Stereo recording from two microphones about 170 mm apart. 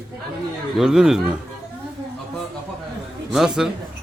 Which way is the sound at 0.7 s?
5° right (ahead or behind).